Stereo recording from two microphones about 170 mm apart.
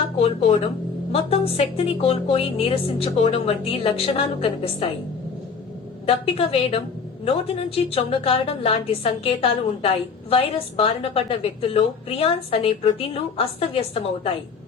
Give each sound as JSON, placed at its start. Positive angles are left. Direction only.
{"t": 0.2, "sound": "a woman's voice", "side_deg": 40}
{"t": 6.1, "sound": "a woman's voice", "side_deg": 35}